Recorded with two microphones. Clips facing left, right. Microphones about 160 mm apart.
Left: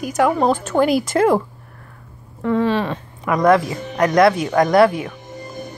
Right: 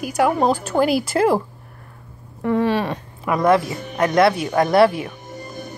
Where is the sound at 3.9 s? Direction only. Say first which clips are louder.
Left 2 dB; 25° right (ahead or behind).